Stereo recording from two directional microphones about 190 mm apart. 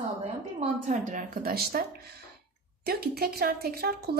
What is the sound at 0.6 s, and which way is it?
A woman's voice, 40° right (ahead or behind).